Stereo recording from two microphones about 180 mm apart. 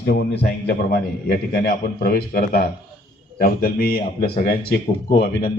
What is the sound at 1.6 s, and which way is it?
A man's voice, 55° left (ahead or behind).